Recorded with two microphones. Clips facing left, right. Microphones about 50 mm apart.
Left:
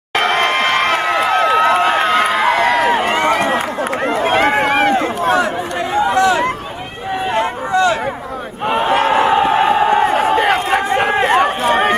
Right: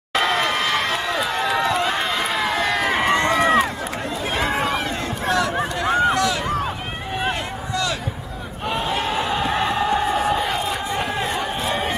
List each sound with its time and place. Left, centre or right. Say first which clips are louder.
0.1 s a sound: left 5 dB; left
3.3 s run: left 3 dB; left
3.5 s run: left 2 dB; left
4.9 s run: left 7 dB; left
6.1 s a sound: left 7 dB; left
11.3 s run: left 10 dB; left